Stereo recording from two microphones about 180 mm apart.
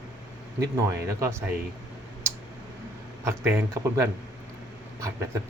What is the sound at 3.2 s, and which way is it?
Speech, 15° right (ahead or behind).